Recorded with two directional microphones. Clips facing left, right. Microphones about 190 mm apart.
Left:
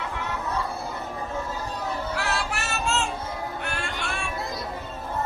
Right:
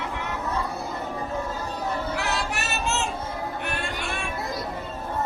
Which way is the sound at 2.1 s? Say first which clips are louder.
Right 1 dB; 20° right (ahead or behind).